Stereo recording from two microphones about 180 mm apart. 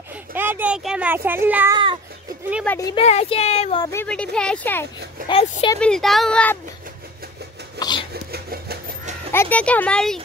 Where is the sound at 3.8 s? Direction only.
15° left (ahead or behind).